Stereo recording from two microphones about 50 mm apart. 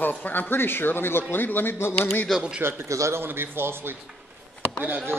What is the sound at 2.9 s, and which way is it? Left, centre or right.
Speech, right.